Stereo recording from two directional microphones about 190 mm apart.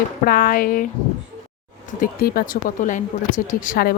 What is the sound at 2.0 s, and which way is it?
Speech, 50° left (ahead or behind).